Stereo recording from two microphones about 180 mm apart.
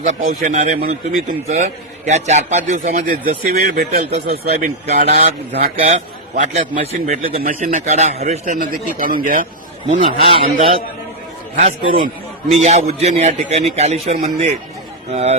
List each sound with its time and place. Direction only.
0.0 s a man's voice: 45° right (ahead or behind)
0.8 s a man's voice: 55° right (ahead or behind)
3.5 s a man's voice: 60° right (ahead or behind)
5.7 s a man's voice: 35° right (ahead or behind)
10.2 s a man's voice: 30° right (ahead or behind)
11.5 s a man's voice: 50° right (ahead or behind)